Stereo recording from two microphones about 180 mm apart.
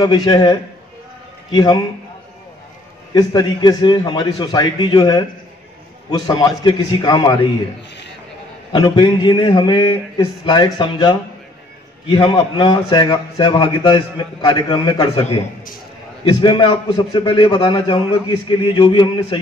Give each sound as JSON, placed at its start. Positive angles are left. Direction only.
{"t": 0.0, "sound": "a man's voice", "side_deg": 25}
{"t": 3.2, "sound": "a man's voice", "side_deg": 25}
{"t": 8.7, "sound": "a man's voice", "side_deg": 25}